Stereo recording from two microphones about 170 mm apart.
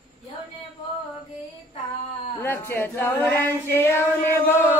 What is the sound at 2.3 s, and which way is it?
Female singing, 15° left (ahead or behind).